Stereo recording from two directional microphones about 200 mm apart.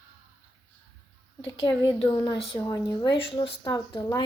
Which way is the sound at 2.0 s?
25° left (ahead or behind).